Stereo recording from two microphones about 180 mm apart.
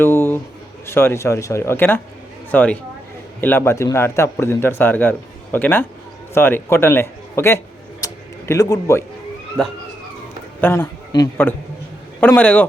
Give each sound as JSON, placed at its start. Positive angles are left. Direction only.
{"t": 0.0, "sound": "a sound", "side_deg": 15}
{"t": 0.9, "sound": "a man's voice", "side_deg": 15}
{"t": 8.0, "sound": "a sound", "side_deg": 20}
{"t": 9.6, "sound": "speech", "side_deg": 5}
{"t": 11.1, "sound": "a man's voice", "side_deg": 25}
{"t": 12.2, "sound": "a man's voice", "side_deg": 10}